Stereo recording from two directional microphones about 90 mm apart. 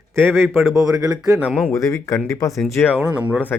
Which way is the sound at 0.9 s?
40° right (ahead or behind).